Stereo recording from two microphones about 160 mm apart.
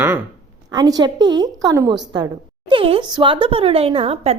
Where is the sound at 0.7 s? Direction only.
25° right (ahead or behind).